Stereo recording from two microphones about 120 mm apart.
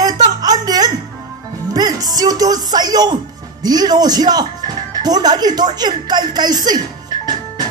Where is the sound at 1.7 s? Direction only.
30° right (ahead or behind).